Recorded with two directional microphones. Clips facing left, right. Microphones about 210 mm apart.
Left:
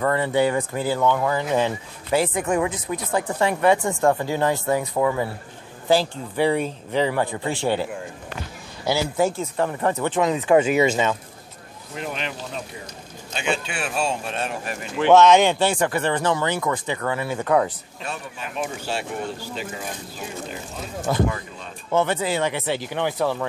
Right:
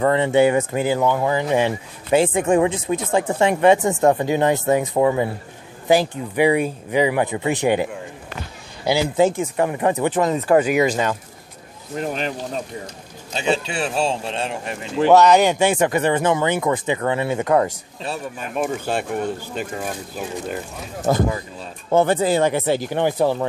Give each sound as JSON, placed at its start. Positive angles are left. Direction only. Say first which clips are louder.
{"t": 0.0, "sound": "speech", "louder": "right 5 dB", "side_deg": -20}
{"t": 10.2, "sound": "speech", "louder": "even", "side_deg": 0}
{"t": 11.9, "sound": "speech", "louder": "right 6 dB", "side_deg": -40}
{"t": 15.0, "sound": "speech", "louder": "right 1 dB", "side_deg": -10}
{"t": 18.0, "sound": "speech", "louder": "right 4 dB", "side_deg": -40}
{"t": 21.0, "sound": "speech", "louder": "right 3 dB", "side_deg": -40}
{"t": 23.1, "sound": "speech", "louder": "right 4 dB", "side_deg": -25}